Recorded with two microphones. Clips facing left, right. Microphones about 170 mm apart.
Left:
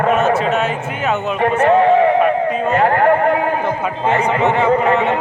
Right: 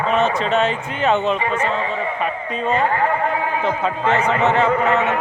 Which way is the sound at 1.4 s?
65° left (ahead or behind).